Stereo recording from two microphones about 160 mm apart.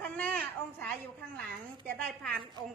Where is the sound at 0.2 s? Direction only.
10° left (ahead or behind).